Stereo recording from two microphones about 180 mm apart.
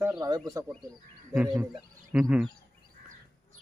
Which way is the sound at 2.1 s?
Centre (ahead or behind).